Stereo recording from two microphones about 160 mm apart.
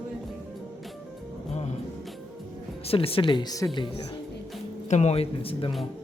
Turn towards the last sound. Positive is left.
turn(degrees=35)  # may be behind; listen again after turning